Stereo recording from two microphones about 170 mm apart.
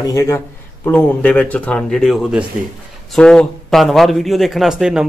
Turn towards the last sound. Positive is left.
turn(degrees=-5)  # may be behind; listen again after turning